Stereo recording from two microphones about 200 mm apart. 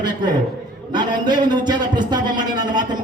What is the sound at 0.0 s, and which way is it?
A man's voice, 20° right (ahead or behind).